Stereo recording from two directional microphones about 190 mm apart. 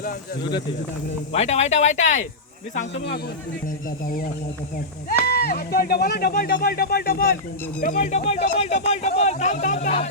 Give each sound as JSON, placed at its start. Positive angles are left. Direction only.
{"t": 1.3, "sound": "speech", "side_deg": 35}
{"t": 5.2, "sound": "speech", "side_deg": 55}
{"t": 8.2, "sound": "speech", "side_deg": 35}